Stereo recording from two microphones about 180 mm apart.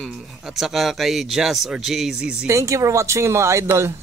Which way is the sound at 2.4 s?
15° right (ahead or behind).